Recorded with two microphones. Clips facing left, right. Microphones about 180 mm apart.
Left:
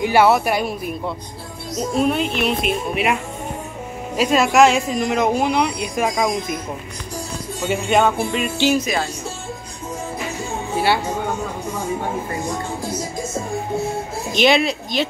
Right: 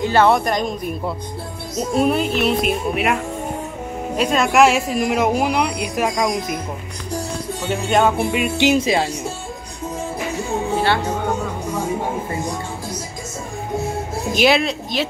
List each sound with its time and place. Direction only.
0.0 s a woman's voice: 10° left (ahead or behind)
4.2 s a woman's voice: 5° left (ahead or behind)
7.6 s a woman's voice: 5° left (ahead or behind)
8.2 s music: 10° right (ahead or behind)
8.7 s speech: 25° right (ahead or behind)
14.3 s a woman's voice: 5° right (ahead or behind)